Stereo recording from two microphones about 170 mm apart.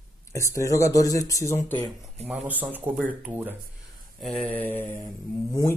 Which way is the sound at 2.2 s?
10° right (ahead or behind).